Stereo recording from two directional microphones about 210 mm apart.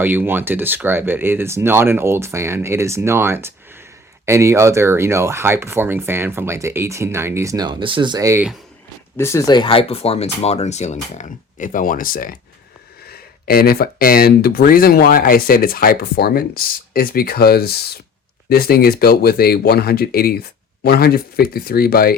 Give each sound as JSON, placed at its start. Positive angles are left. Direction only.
{"t": 0.0, "sound": "speech", "side_deg": -10}
{"t": 9.1, "sound": "speech", "side_deg": 15}